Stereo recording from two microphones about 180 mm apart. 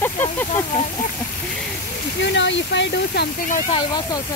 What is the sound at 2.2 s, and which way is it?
Speech, 85° left.